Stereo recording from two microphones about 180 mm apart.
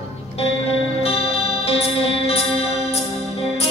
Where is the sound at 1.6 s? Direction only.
35° left (ahead or behind).